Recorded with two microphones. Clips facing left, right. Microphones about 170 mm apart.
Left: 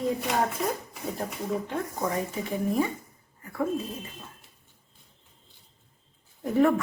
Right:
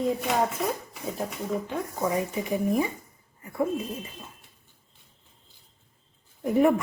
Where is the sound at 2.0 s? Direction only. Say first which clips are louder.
Right 5 dB; 15° right (ahead or behind).